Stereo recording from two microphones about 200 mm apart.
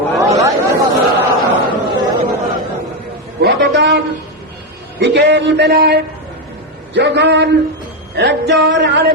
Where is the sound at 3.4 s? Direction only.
55° right (ahead or behind).